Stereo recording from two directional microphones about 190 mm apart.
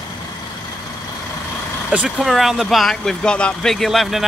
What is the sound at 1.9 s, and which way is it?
Speech, 5° right (ahead or behind).